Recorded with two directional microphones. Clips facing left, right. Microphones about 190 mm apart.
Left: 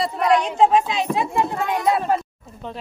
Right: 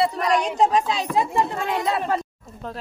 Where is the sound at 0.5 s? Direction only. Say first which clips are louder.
Left 3 dB; 40° right (ahead or behind).